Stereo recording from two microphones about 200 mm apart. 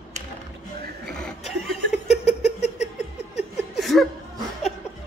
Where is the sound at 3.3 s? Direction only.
Centre (ahead or behind).